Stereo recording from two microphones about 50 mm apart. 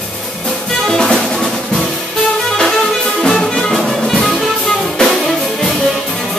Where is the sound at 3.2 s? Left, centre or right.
Centre.